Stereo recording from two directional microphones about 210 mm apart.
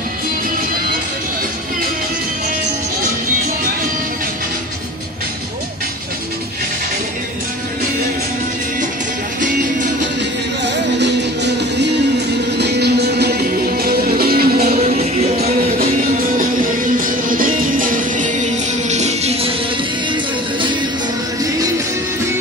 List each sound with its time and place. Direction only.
10.6 s music: 55° right (ahead or behind)
14.8 s music: 30° right (ahead or behind)
15.3 s music: 45° right (ahead or behind)